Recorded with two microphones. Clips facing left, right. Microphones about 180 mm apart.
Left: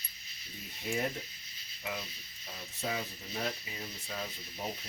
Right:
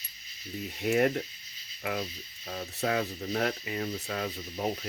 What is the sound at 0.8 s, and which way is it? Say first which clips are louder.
Speech: right 9 dB; 70° right (ahead or behind).